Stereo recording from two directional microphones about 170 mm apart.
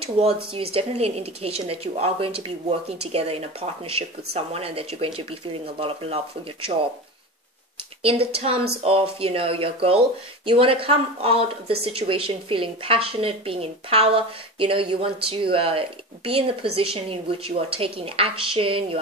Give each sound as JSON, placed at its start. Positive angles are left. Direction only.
{"t": 0.2, "sound": "speech", "side_deg": -30}
{"t": 8.0, "sound": "speech", "side_deg": -35}